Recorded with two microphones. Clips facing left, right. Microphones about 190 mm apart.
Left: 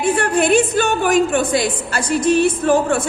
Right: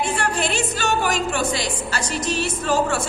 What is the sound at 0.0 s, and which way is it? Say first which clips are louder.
A woman's voice: left 7 dB; 55° left (ahead or behind).